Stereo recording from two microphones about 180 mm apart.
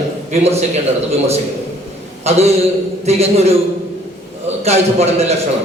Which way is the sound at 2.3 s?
35° right (ahead or behind).